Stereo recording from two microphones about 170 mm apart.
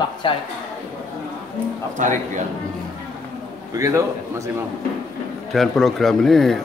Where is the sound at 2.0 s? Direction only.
50° right (ahead or behind).